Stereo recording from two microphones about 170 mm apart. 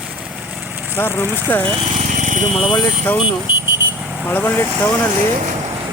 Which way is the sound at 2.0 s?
50° right (ahead or behind).